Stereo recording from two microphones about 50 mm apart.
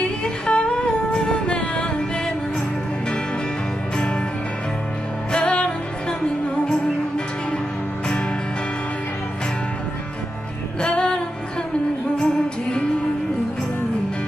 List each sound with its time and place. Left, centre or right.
0.0 s humming: left
5.3 s music: left
10.8 s music: centre